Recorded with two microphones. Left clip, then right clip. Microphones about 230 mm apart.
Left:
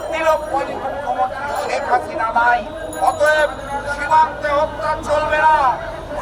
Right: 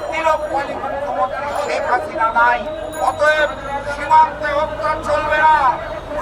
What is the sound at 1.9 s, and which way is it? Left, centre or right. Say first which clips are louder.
A man's voice: even; centre.